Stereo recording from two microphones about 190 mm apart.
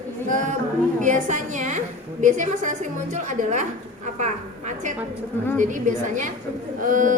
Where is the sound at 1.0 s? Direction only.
40° right (ahead or behind).